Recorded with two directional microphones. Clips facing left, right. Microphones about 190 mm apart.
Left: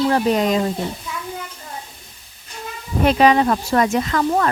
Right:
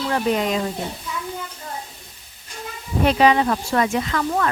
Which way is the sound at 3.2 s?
45° left (ahead or behind).